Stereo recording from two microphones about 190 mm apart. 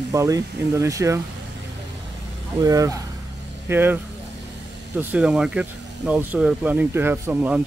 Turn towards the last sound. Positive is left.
turn(degrees=-10)  # may be behind; listen again after turning